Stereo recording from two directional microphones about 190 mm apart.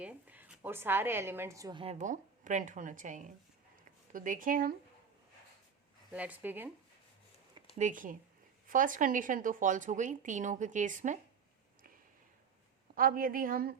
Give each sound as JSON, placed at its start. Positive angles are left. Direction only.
{"t": 0.0, "sound": "speech", "side_deg": -10}
{"t": 1.8, "sound": "a woman's voice", "side_deg": -35}
{"t": 6.1, "sound": "speech", "side_deg": -5}
{"t": 7.8, "sound": "speech", "side_deg": -40}
{"t": 13.0, "sound": "speech", "side_deg": -50}